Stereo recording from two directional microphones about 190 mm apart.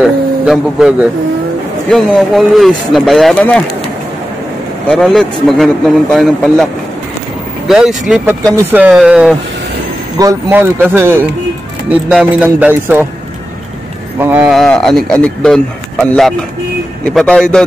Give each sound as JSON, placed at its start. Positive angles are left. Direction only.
{"t": 0.0, "sound": "a sound", "side_deg": 0}
{"t": 1.9, "sound": "speech", "side_deg": 5}
{"t": 4.8, "sound": "speech", "side_deg": 0}
{"t": 14.1, "sound": "speech", "side_deg": -10}